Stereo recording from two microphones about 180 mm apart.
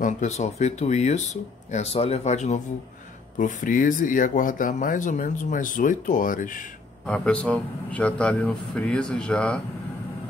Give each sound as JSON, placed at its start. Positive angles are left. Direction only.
{"t": 0.0, "sound": "speech", "side_deg": 40}
{"t": 7.1, "sound": "a man's voice", "side_deg": 5}